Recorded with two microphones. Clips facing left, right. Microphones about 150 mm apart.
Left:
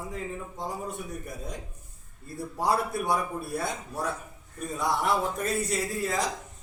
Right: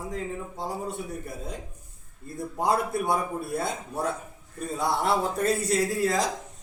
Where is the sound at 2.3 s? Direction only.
20° right (ahead or behind); by 6.2 s 35° right (ahead or behind).